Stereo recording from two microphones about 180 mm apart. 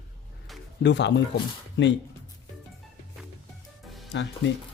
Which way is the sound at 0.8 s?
75° left (ahead or behind).